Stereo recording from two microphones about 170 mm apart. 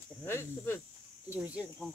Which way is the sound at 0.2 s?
15° left (ahead or behind).